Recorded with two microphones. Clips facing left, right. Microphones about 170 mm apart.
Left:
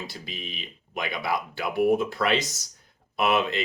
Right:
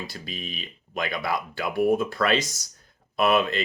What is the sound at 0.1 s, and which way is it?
Speech, 20° left (ahead or behind).